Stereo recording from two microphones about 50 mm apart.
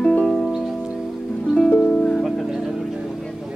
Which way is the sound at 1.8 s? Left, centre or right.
Left.